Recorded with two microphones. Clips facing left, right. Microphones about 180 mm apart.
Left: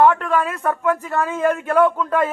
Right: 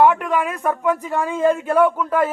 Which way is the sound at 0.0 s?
15° right (ahead or behind).